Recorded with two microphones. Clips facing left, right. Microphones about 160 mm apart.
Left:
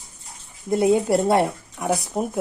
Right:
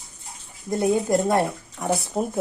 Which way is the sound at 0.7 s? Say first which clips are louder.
Left 3 dB; 20° left (ahead or behind).